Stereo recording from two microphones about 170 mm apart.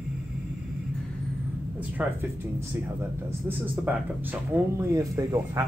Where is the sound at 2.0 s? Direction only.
5° right (ahead or behind).